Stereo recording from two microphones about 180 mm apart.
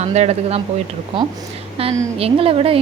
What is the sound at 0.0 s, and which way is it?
Speech, 40° right (ahead or behind).